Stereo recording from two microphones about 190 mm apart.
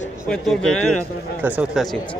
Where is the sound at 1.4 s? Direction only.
10° right (ahead or behind).